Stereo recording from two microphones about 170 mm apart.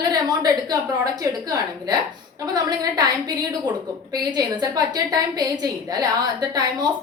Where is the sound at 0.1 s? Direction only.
20° right (ahead or behind).